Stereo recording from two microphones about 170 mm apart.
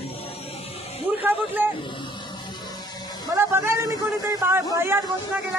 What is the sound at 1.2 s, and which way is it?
Speech, 10° right (ahead or behind).